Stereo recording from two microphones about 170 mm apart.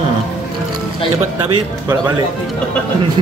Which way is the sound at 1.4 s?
20° right (ahead or behind).